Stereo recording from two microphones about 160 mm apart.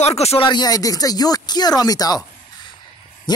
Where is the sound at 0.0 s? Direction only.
40° left (ahead or behind).